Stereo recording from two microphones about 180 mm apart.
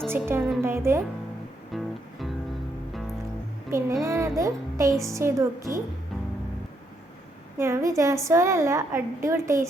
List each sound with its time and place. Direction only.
0.3 s a woman's voice: 10° right (ahead or behind)
1.7 s music: centre (ahead or behind)
3.7 s a child's voice: 15° right (ahead or behind)
7.6 s a woman's voice: 15° right (ahead or behind)